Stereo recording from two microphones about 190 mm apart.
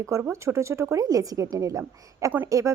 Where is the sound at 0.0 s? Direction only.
15° right (ahead or behind).